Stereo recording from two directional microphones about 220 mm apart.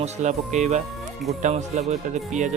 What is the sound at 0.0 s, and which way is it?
Speech, 30° right (ahead or behind).